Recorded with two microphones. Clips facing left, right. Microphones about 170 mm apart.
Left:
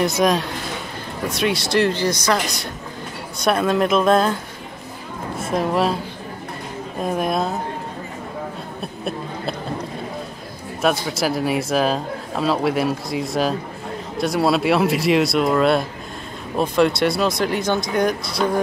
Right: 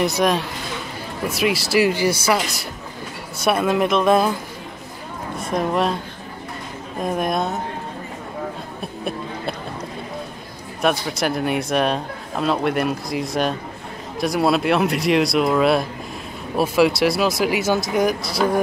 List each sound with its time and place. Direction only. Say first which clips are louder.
0.0 s speech: left 1 dB; centre (ahead or behind)
5.5 s speech: left 1 dB; centre (ahead or behind)
7.0 s speech: even; centre (ahead or behind)
10.8 s speech: even; centre (ahead or behind)